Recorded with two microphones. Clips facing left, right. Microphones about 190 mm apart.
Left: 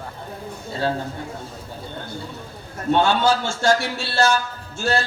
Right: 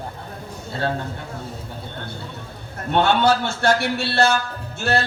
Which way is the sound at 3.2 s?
60° right (ahead or behind).